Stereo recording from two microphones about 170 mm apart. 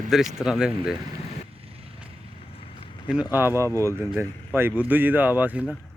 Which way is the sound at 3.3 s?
15° right (ahead or behind).